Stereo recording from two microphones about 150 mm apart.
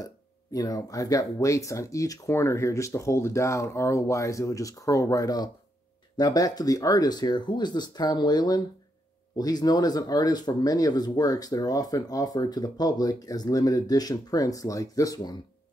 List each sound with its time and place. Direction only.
0.0 s speech: 25° left (ahead or behind)